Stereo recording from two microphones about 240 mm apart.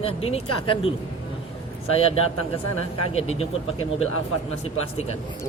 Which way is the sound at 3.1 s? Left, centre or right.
Left.